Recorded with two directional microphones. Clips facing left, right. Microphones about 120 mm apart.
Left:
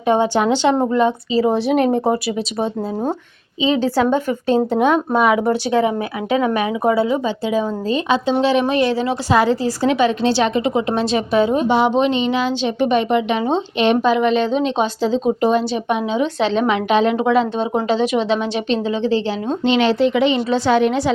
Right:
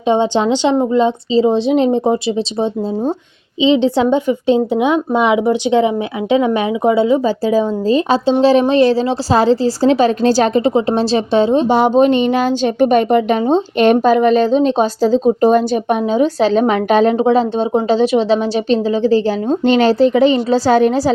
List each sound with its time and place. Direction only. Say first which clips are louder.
0.1 s speech: right 2 dB; 20° right (ahead or behind)
3.6 s speech: right 4 dB; 25° right (ahead or behind)
7.3 s speech: right 5 dB; 40° right (ahead or behind)
11.7 s speech: right 4 dB; 45° right (ahead or behind)
17.2 s speech: right 3 dB; 30° right (ahead or behind)